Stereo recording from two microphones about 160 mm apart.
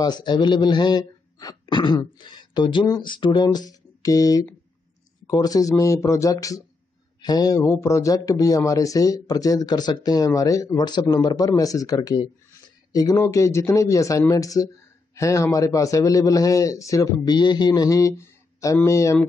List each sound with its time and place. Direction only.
0.0 s speech: 25° left (ahead or behind)